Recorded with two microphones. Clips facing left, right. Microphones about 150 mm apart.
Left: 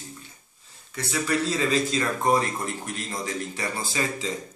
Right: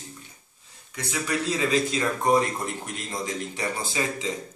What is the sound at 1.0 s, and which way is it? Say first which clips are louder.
Speech: left 3 dB; 15° right (ahead or behind).